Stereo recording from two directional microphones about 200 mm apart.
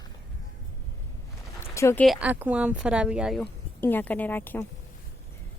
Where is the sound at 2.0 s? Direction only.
5° right (ahead or behind).